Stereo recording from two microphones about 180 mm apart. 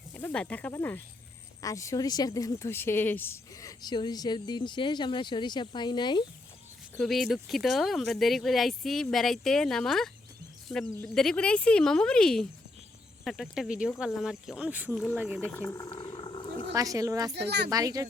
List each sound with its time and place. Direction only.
0.1 s speech: 10° left (ahead or behind); by 6.2 s 25° left (ahead or behind)
7.0 s speech: centre (ahead or behind)
15.5 s speech: 15° left (ahead or behind)
15.9 s roaring cats: 30° left (ahead or behind)
16.7 s speech: 20° right (ahead or behind)
17.3 s speech: 65° right (ahead or behind)
17.7 s speech: 20° right (ahead or behind)